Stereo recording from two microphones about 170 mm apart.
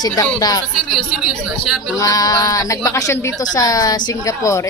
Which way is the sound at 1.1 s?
Centre (ahead or behind).